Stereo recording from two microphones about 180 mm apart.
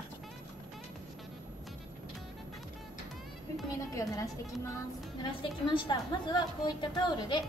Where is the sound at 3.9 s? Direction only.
15° left (ahead or behind).